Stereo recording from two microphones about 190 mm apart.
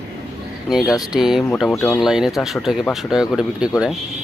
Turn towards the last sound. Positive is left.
turn(degrees=-5)  # may be behind; listen again after turning